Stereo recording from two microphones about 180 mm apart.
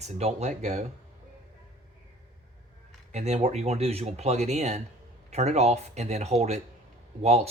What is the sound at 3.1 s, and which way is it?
Speech, 40° right (ahead or behind).